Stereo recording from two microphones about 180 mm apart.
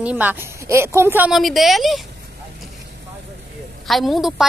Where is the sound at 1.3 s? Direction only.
Centre (ahead or behind).